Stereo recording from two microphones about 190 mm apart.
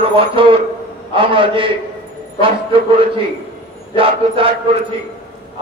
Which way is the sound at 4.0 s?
30° right (ahead or behind).